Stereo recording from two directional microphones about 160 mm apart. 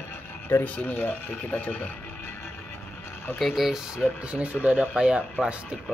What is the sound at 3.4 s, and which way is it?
Speech, centre (ahead or behind).